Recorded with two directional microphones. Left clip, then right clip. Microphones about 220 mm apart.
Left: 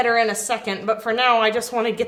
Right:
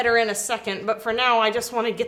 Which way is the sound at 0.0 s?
30° right (ahead or behind).